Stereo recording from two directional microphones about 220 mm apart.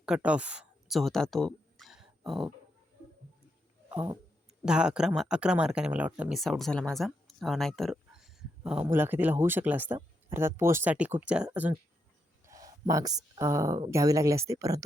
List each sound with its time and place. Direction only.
0.0 s speech: 5° right (ahead or behind)
1.8 s a sound: centre (ahead or behind)
4.6 s speech: 5° right (ahead or behind)